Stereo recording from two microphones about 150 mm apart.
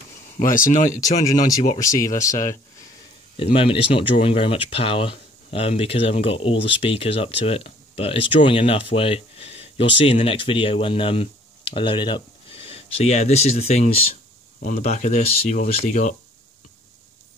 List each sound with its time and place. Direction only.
0.4 s speech: 65° left (ahead or behind)
1.8 s speech: 20° left (ahead or behind)
3.3 s speech: 40° left (ahead or behind)
14.6 s speech: 60° left (ahead or behind)
15.5 s speech: 55° left (ahead or behind)